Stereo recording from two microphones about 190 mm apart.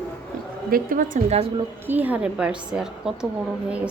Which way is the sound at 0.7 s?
45° right (ahead or behind).